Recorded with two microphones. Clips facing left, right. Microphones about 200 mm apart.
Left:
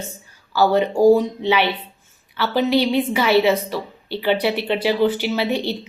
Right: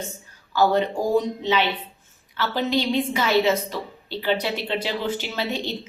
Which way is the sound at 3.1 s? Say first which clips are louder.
Left 4 dB; 10° left (ahead or behind).